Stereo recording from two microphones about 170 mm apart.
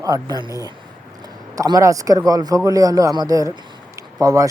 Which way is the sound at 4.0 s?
20° right (ahead or behind).